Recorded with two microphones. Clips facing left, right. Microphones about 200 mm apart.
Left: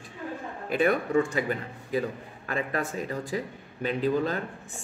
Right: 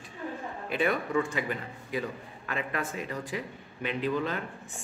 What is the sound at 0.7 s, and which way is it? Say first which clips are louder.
A man's voice: left 4 dB; 45° left (ahead or behind).